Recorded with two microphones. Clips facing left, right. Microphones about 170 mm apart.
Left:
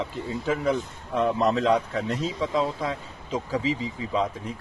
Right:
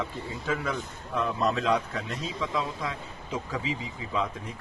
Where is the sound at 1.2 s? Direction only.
30° left (ahead or behind).